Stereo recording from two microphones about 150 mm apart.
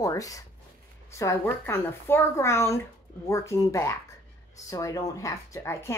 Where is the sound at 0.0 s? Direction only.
20° left (ahead or behind).